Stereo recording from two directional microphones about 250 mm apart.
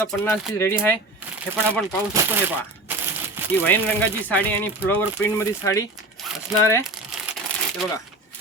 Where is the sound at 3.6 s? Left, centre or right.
Centre.